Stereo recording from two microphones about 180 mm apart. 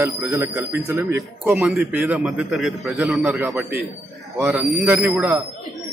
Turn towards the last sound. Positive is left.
turn(degrees=-10)  # may be behind; listen again after turning